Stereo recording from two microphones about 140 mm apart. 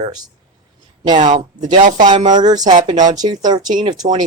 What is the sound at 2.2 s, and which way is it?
Speech, 30° right (ahead or behind).